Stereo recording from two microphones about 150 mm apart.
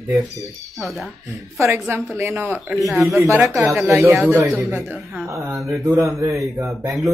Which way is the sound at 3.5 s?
20° right (ahead or behind).